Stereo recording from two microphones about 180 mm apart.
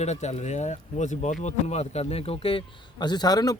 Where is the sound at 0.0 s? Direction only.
40° left (ahead or behind).